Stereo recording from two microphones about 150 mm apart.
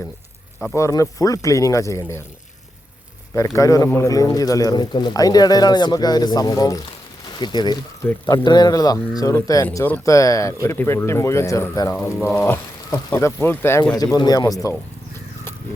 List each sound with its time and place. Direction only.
0.6 s speech: 20° left (ahead or behind)
3.3 s speech: 20° left (ahead or behind)
8.0 s speech: 10° left (ahead or behind)
8.4 s speech: 25° left (ahead or behind)